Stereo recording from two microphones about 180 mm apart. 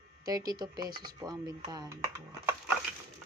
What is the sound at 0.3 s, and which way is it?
Speech, 20° right (ahead or behind).